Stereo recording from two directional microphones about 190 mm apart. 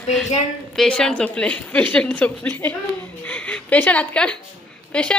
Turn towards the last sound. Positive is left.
turn(degrees=5)  # may be behind; listen again after turning